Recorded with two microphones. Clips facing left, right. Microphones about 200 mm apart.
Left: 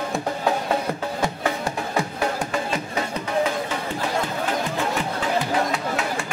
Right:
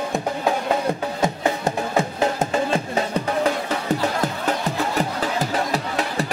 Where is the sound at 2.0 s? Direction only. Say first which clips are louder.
Right 3 dB; 25° right (ahead or behind).